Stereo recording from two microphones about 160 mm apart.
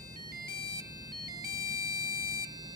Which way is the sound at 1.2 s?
20° right (ahead or behind).